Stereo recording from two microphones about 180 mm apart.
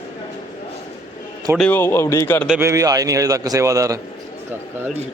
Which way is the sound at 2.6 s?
15° right (ahead or behind).